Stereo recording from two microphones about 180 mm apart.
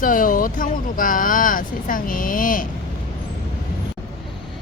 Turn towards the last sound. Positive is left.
turn(degrees=50)  # may be behind; listen again after turning